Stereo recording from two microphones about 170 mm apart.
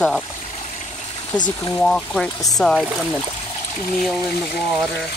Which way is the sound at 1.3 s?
25° left (ahead or behind).